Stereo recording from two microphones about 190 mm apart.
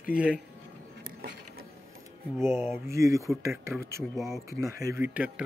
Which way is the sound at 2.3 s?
15° right (ahead or behind).